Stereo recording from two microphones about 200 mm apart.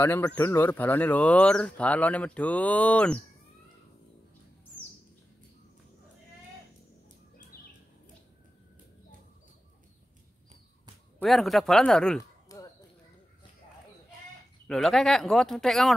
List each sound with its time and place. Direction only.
0.0 s speech: 10° left (ahead or behind)
11.1 s speech: centre (ahead or behind)
12.2 s a sound: 15° left (ahead or behind)
14.7 s speech: centre (ahead or behind)